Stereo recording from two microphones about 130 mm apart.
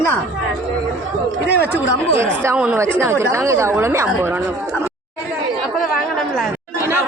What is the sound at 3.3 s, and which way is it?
Speech, 20° right (ahead or behind).